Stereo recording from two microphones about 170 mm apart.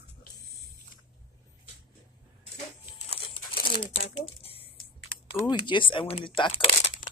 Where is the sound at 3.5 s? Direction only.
80° left.